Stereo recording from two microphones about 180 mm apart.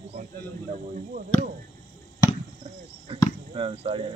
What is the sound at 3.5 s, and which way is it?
Speech, 30° right (ahead or behind).